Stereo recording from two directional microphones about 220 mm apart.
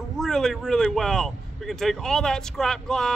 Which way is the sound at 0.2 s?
Centre (ahead or behind).